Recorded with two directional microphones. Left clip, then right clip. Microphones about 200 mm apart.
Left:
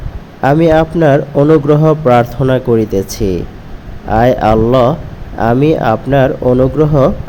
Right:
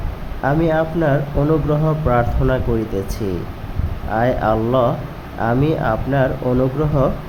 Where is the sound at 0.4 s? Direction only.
30° left (ahead or behind).